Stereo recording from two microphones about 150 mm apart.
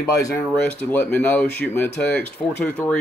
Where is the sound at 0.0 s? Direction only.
20° left (ahead or behind).